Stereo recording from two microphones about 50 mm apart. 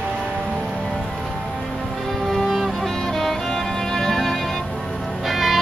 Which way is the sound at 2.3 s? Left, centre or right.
Centre.